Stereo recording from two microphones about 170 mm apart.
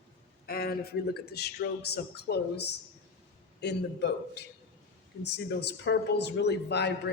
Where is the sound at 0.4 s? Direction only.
65° left (ahead or behind).